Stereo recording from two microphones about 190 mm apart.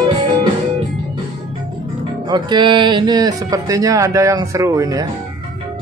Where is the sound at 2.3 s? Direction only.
25° right (ahead or behind).